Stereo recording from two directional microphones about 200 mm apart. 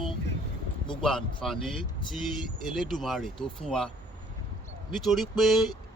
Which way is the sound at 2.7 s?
Centre (ahead or behind).